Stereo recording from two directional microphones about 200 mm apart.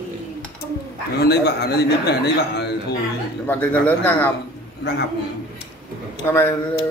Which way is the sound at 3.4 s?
10° left (ahead or behind).